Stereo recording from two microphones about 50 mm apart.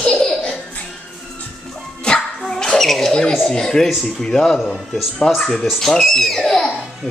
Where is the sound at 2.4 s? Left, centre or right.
Centre.